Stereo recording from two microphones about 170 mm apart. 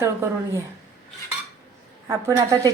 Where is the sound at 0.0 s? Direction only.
15° right (ahead or behind).